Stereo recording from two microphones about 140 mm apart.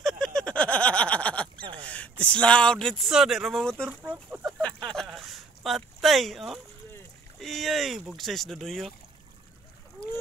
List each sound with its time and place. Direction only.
0.0 s a sound: 5° left (ahead or behind)
1.9 s speech: 10° left (ahead or behind)
3.9 s chicken: 15° right (ahead or behind)
4.6 s a sound: 5° left (ahead or behind)
7.3 s rowboat: centre (ahead or behind)
8.1 s speech: centre (ahead or behind)